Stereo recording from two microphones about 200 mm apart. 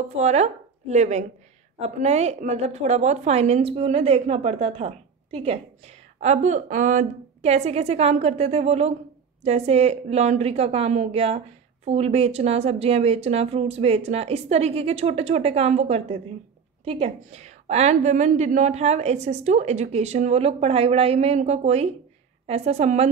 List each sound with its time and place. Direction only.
0.1 s a woman's voice: 35° right (ahead or behind)